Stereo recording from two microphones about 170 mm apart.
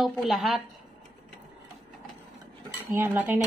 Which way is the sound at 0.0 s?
Centre (ahead or behind).